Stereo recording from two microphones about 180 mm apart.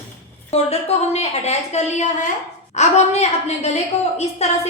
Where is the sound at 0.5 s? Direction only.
35° left (ahead or behind).